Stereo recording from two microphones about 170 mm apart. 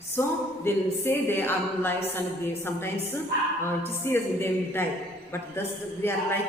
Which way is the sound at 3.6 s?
15° left (ahead or behind).